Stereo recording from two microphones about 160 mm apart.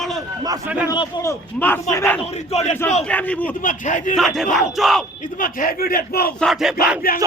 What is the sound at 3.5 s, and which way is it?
Speech, 55° left (ahead or behind).